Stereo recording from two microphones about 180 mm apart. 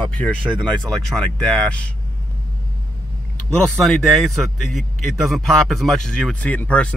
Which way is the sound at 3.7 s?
Centre (ahead or behind).